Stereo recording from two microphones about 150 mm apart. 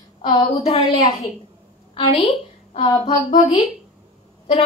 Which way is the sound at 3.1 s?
50° left (ahead or behind).